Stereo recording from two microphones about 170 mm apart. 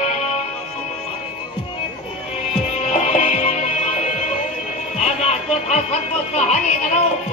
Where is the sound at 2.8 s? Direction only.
40° left (ahead or behind).